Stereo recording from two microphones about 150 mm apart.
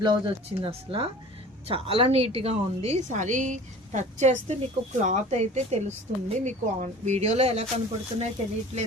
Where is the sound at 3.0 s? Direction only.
55° right (ahead or behind).